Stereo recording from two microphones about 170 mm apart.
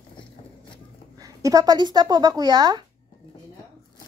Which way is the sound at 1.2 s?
20° right (ahead or behind).